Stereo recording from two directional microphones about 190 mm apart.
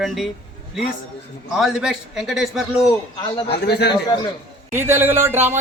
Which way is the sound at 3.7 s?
60° left (ahead or behind).